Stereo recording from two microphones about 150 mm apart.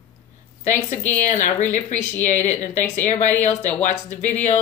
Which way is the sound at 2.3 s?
55° left (ahead or behind).